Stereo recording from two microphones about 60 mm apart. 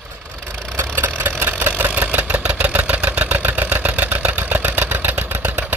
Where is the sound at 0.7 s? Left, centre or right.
Right.